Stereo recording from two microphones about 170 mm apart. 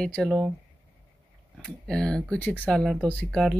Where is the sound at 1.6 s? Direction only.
5° left (ahead or behind).